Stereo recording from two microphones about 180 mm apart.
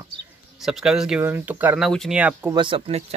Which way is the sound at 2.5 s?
25° right (ahead or behind).